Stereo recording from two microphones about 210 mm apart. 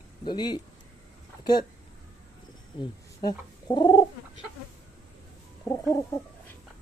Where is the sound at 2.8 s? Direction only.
20° left (ahead or behind).